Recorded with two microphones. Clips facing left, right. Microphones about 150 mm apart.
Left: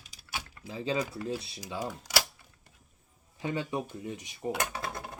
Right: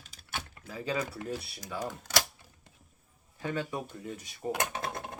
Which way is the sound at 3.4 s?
15° left (ahead or behind).